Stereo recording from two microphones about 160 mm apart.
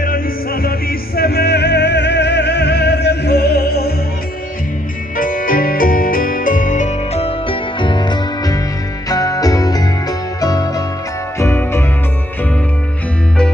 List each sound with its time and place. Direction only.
0.0 s music: 65° left (ahead or behind)
5.1 s music: 60° left (ahead or behind)
7.2 s music: 30° left (ahead or behind); by 11.8 s 15° left (ahead or behind)